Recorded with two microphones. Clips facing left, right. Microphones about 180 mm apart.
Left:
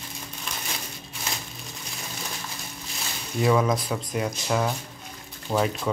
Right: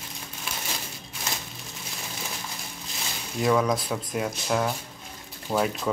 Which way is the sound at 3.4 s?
Centre (ahead or behind).